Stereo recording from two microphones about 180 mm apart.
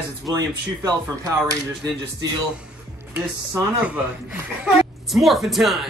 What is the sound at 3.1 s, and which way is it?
A woman's voice, 10° right (ahead or behind).